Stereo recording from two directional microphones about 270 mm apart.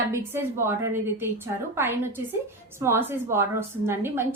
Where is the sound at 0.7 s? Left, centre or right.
Centre.